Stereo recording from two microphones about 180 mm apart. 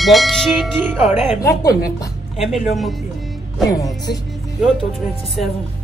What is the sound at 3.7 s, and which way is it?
Speech, 20° left (ahead or behind).